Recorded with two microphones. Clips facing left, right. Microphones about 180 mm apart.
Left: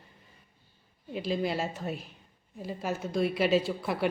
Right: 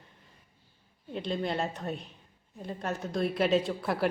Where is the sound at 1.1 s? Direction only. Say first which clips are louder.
Left 1 dB; 5° left (ahead or behind).